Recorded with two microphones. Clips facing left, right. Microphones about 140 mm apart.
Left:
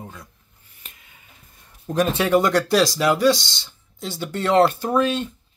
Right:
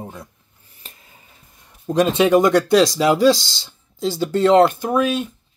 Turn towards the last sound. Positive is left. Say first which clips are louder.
# right 1 dB
turn(degrees=-10)  # may be behind; listen again after turning